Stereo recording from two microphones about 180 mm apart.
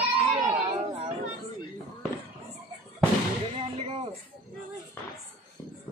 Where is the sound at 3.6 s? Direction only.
30° right (ahead or behind).